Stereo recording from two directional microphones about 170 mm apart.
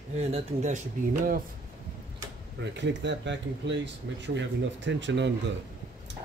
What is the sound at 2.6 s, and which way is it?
Speech, 90° right.